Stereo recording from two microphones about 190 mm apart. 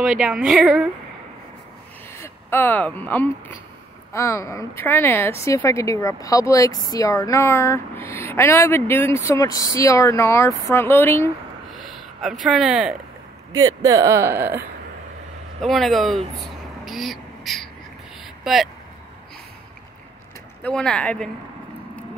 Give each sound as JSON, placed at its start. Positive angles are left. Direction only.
{"t": 0.2, "sound": "a woman's voice", "side_deg": -5}
{"t": 2.1, "sound": "a woman's voice", "side_deg": 10}
{"t": 11.7, "sound": "a sound", "side_deg": 0}
{"t": 12.4, "sound": "a woman's voice", "side_deg": -5}
{"t": 13.5, "sound": "speech", "side_deg": -20}
{"t": 15.6, "sound": "a woman's voice", "side_deg": 0}
{"t": 16.3, "sound": "a sound", "side_deg": 0}
{"t": 18.4, "sound": "speech", "side_deg": 0}
{"t": 20.6, "sound": "a woman's voice", "side_deg": 5}